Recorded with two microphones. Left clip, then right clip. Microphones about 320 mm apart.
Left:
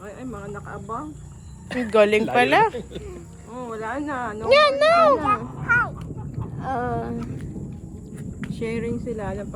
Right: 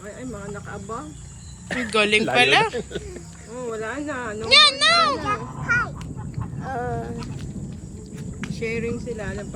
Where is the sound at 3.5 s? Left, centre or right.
Left.